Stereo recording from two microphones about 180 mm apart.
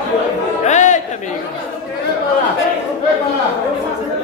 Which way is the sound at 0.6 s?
40° left (ahead or behind).